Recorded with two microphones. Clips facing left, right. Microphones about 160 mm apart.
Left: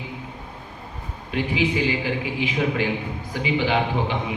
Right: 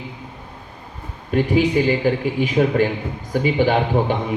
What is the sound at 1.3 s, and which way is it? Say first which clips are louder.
Speech: right 6 dB; 45° right (ahead or behind).